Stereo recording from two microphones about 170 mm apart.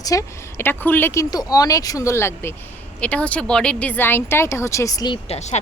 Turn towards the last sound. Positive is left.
turn(degrees=40)  # may be behind; listen again after turning